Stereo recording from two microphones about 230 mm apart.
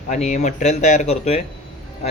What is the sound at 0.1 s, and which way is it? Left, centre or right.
Speech, left.